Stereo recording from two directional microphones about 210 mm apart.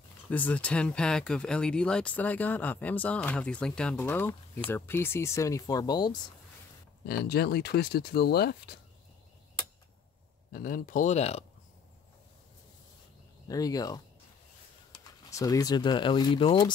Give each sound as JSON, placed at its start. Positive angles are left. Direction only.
{"t": 0.3, "sound": "speech", "side_deg": 5}
{"t": 7.1, "sound": "speech", "side_deg": 50}
{"t": 10.5, "sound": "speech", "side_deg": 40}
{"t": 13.5, "sound": "speech", "side_deg": 15}
{"t": 15.2, "sound": "speech", "side_deg": 15}